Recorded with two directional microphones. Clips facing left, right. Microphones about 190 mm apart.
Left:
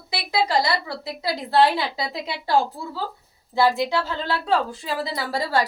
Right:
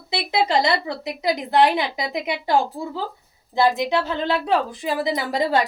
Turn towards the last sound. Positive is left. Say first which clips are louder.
# right 3 dB
turn(degrees=-20)  # may be behind; listen again after turning